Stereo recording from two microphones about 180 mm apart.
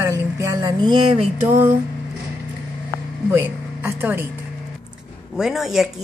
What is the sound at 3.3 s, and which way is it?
Speech, 10° right (ahead or behind).